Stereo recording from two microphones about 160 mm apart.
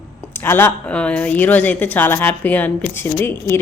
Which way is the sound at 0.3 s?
15° left (ahead or behind).